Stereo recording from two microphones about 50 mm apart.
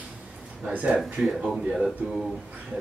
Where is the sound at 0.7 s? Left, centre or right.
Right.